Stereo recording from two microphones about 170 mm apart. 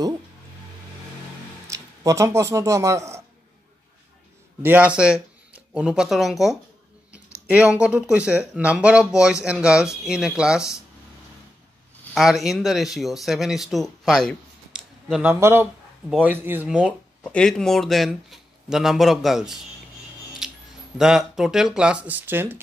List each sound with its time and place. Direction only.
1.7 s speech: 20° right (ahead or behind)
4.6 s speech: 5° right (ahead or behind)
12.1 s a man's voice: centre (ahead or behind)
17.2 s speech: 5° left (ahead or behind)
20.4 s a sound: 5° right (ahead or behind)
21.0 s speech: 5° right (ahead or behind)